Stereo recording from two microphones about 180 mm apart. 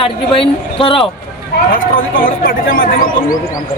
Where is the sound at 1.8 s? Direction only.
50° left (ahead or behind).